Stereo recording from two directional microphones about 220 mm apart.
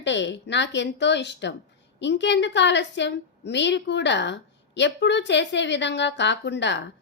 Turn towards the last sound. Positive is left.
turn(degrees=55)  # may be behind; listen again after turning